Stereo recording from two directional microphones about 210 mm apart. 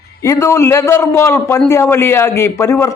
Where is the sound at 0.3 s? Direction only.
10° left (ahead or behind).